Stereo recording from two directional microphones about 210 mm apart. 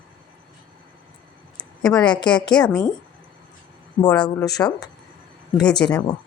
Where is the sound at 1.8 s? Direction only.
5° left (ahead or behind).